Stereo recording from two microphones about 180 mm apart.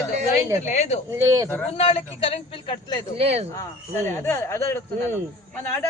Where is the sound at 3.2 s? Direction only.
35° right (ahead or behind).